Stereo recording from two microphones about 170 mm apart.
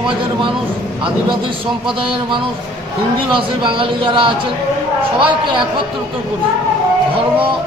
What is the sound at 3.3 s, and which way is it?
Speech, 30° right (ahead or behind).